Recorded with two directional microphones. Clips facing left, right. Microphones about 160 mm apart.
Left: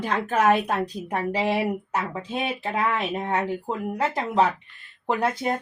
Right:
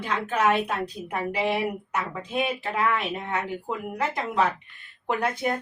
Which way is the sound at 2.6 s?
35° left (ahead or behind).